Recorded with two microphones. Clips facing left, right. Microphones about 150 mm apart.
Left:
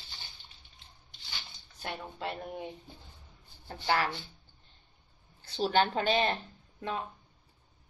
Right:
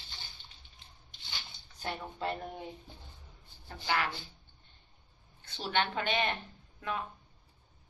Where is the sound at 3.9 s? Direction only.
35° left (ahead or behind).